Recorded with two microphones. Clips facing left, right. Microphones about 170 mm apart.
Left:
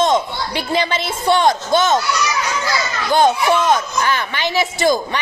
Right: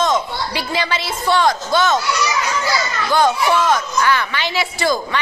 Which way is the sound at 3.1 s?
20° left (ahead or behind).